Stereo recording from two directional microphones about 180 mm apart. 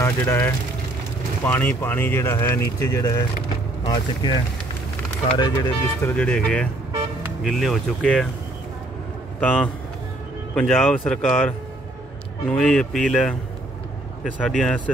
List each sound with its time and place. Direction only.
0.0 s speech: 15° left (ahead or behind)
6.0 s speech: 5° left (ahead or behind)
9.4 s speech: 10° left (ahead or behind)